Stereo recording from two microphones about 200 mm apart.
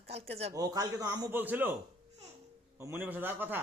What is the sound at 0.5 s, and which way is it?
A man's voice, 15° right (ahead or behind).